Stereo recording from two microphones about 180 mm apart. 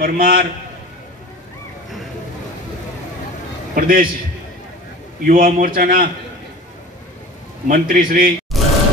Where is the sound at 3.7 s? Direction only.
50° right (ahead or behind).